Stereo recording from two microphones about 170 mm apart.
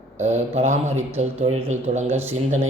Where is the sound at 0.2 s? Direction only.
40° right (ahead or behind).